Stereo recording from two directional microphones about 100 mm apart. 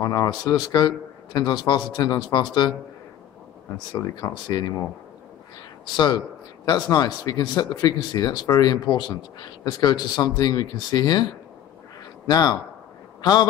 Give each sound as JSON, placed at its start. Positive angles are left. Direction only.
{"t": 0.0, "sound": "a man's voice", "side_deg": 35}
{"t": 3.9, "sound": "a man's voice", "side_deg": 35}
{"t": 5.9, "sound": "a man's voice", "side_deg": 45}
{"t": 12.3, "sound": "a man's voice", "side_deg": 40}